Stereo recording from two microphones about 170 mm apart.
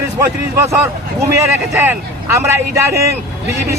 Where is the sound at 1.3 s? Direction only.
15° right (ahead or behind).